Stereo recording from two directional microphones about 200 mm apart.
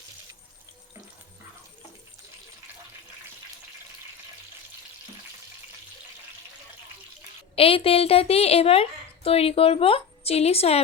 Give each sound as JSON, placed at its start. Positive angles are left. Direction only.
{"t": 7.5, "sound": "a woman's voice", "side_deg": 30}